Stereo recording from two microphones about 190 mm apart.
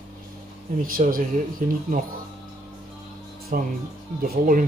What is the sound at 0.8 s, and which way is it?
Speech, 50° right (ahead or behind).